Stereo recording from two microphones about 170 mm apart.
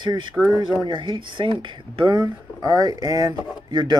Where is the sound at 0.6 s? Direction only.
30° right (ahead or behind).